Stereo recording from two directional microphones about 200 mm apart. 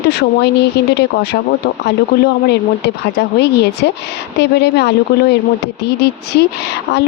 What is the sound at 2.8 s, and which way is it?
Speech, 55° left (ahead or behind).